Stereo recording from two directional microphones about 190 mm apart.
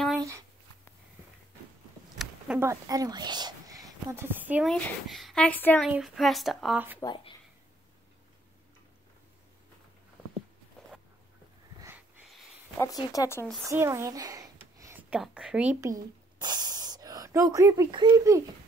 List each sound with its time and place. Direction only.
2.1 s a sound: 5° right (ahead or behind)
2.6 s speech: 15° right (ahead or behind)
4.6 s speech: 5° left (ahead or behind)
5.9 s speech: centre (ahead or behind)
7.0 s speech: 25° left (ahead or behind)
12.3 s a sound: centre (ahead or behind)
12.8 s speech: 20° left (ahead or behind)
13.7 s speech: 15° right (ahead or behind)
16.3 s speech: 20° right (ahead or behind)